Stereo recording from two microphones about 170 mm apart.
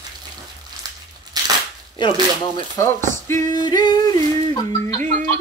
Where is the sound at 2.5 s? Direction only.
20° left (ahead or behind).